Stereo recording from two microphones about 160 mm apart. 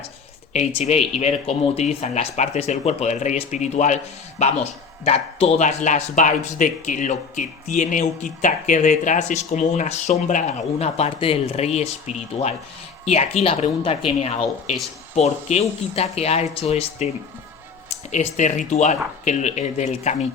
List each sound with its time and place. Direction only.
0.5 s speech: 40° left (ahead or behind)
18.1 s speech: 50° left (ahead or behind)